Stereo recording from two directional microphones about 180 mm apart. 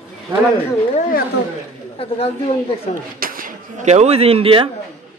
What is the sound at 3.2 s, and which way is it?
Speech, 50° right (ahead or behind).